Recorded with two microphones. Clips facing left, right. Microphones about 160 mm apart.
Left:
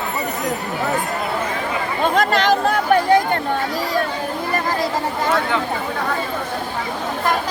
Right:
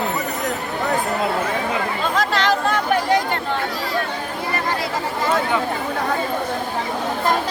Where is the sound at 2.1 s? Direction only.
50° left (ahead or behind).